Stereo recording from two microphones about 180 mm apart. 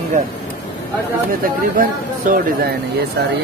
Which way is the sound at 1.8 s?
50° right (ahead or behind).